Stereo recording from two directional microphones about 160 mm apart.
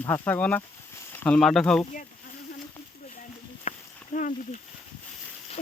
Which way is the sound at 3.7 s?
55° left (ahead or behind).